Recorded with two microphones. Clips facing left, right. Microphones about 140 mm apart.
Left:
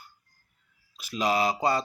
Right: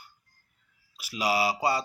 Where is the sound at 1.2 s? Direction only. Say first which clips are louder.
Left 1 dB; 10° right (ahead or behind).